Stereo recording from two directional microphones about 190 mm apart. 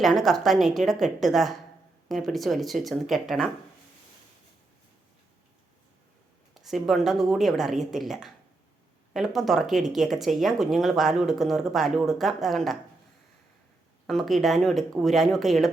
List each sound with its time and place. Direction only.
0.0 s speech: centre (ahead or behind)
6.5 s speech: centre (ahead or behind)
14.1 s speech: centre (ahead or behind)